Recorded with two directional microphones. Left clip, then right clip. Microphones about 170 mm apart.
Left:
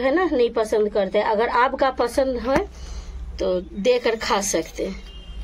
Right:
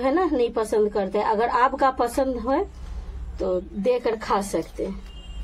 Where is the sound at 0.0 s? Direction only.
10° right (ahead or behind).